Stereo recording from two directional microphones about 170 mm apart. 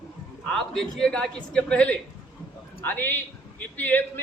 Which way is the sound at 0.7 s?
5° left (ahead or behind).